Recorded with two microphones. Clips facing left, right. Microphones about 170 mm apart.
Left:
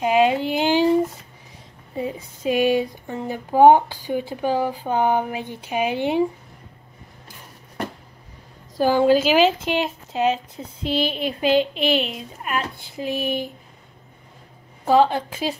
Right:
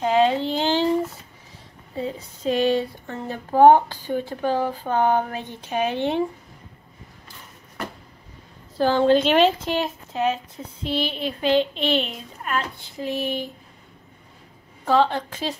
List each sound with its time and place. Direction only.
0.0 s a sound: 10° left (ahead or behind)
2.0 s speech: 15° left (ahead or behind)
8.7 s speech: 10° left (ahead or behind)
9.7 s speech: 20° left (ahead or behind)
14.9 s speech: 10° left (ahead or behind)